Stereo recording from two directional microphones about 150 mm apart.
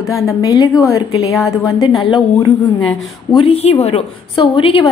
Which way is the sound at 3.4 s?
45° left (ahead or behind).